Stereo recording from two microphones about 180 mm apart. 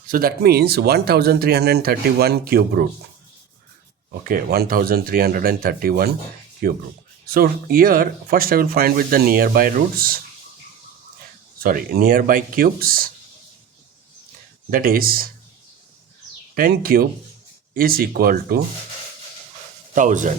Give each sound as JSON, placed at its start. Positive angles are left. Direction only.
{"t": 0.1, "sound": "speech", "side_deg": -55}
{"t": 4.2, "sound": "speech", "side_deg": -50}
{"t": 11.6, "sound": "speech", "side_deg": -55}
{"t": 14.7, "sound": "speech", "side_deg": -55}
{"t": 16.6, "sound": "speech", "side_deg": -55}
{"t": 19.9, "sound": "speech", "side_deg": -45}